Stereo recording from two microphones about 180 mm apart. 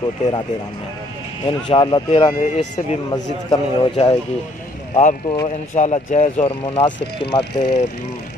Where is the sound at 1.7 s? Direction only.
25° left (ahead or behind).